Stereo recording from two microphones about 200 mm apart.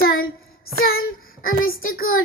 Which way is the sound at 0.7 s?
50° left (ahead or behind).